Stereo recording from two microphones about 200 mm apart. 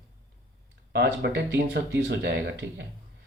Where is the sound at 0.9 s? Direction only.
55° right (ahead or behind).